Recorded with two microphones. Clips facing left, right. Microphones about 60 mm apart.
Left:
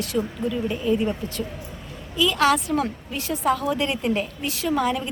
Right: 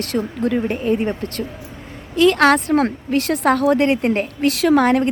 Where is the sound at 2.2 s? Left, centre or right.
Right.